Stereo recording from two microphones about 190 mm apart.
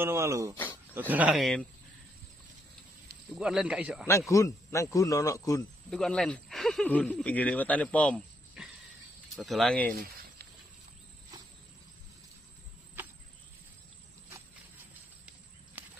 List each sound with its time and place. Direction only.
0.0 s speech: 15° right (ahead or behind)
3.3 s speech: 5° right (ahead or behind)
4.3 s a man's voice: 15° left (ahead or behind)
5.9 s speech: 5° left (ahead or behind)
15.8 s walk: 10° right (ahead or behind)